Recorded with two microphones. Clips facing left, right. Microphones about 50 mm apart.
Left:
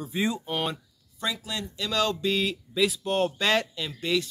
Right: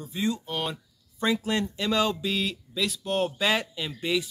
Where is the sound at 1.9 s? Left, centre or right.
Centre.